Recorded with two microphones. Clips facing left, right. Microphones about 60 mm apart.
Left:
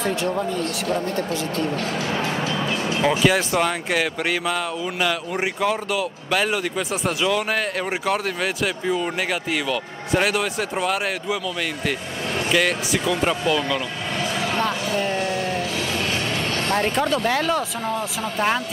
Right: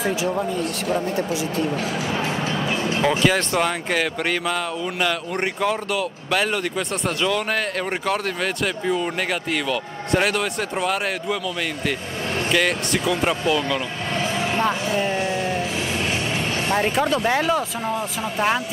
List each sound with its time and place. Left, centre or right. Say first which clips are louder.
0.0 s speech: even; centre
3.0 s speech: left 1 dB; centre
12.4 s speech: even; centre
14.1 s a sound: right 1 dB; right
14.6 s speech: right 3 dB; right
16.6 s speech: right 1 dB; centre